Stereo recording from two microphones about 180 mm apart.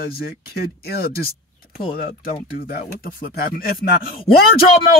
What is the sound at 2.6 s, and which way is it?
Speech, 55° left (ahead or behind).